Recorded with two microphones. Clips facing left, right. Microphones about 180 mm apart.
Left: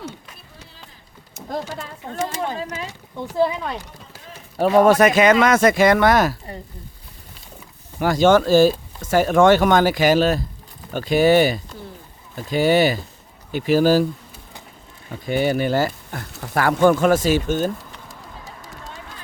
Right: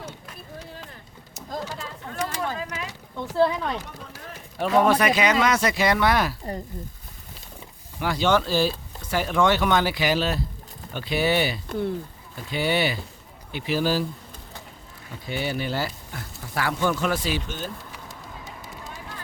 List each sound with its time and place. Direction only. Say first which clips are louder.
1.3 s a sound: left 4 dB; 60° left (ahead or behind)
2.0 s speech: left 4 dB; 25° left (ahead or behind)
3.2 s speech: left 1 dB; 10° left (ahead or behind)
4.5 s speech: left 6 dB; 40° left (ahead or behind)
7.9 s speech: left 7 dB; 45° left (ahead or behind)
15.3 s speech: left 9 dB; 50° left (ahead or behind)
16.3 s speech: left 7 dB; 70° left (ahead or behind)
16.6 s speech: left 9 dB; 50° left (ahead or behind)
17.9 s bird: left 1 dB; centre (ahead or behind)